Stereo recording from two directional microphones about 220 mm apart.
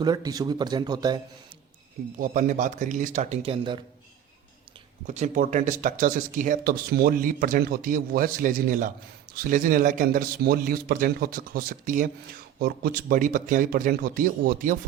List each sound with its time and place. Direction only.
0.0 s speech: 15° right (ahead or behind)
2.1 s a man's voice: 40° right (ahead or behind)
5.0 s a man's voice: 30° right (ahead or behind)